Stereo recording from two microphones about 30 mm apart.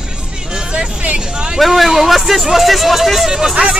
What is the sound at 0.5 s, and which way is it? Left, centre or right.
Music, right.